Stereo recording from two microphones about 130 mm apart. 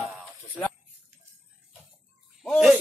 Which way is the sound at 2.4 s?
Centre (ahead or behind).